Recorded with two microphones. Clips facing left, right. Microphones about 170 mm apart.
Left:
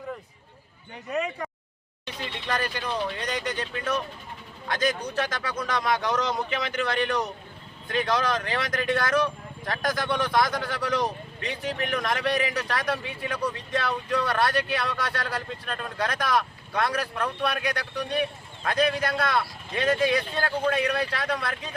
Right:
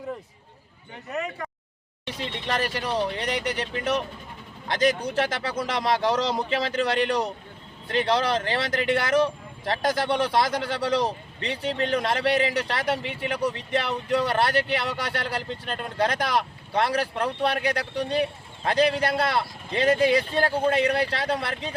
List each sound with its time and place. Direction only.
1.1 s speech: centre (ahead or behind)
2.0 s speech: 25° right (ahead or behind)
4.7 s speech: 30° right (ahead or behind)